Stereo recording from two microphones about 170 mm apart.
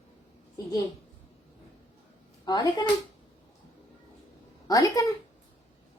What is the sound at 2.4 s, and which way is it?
Speech, 25° left (ahead or behind).